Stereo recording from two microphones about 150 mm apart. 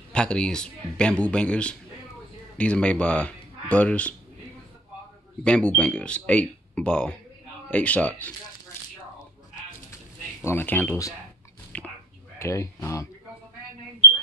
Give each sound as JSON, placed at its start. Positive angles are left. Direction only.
{"t": 0.1, "sound": "speech", "side_deg": 5}
{"t": 5.4, "sound": "speech", "side_deg": 10}
{"t": 10.4, "sound": "speech", "side_deg": 15}
{"t": 11.7, "sound": "a sound", "side_deg": 10}
{"t": 12.4, "sound": "speech", "side_deg": 20}